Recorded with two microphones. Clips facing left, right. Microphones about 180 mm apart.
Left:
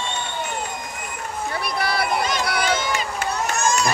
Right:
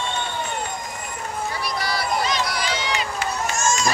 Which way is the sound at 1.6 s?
60° left (ahead or behind).